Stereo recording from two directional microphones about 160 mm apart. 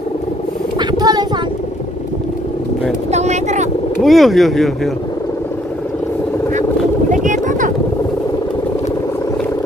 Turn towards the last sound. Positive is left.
turn(degrees=-55)  # may be behind; listen again after turning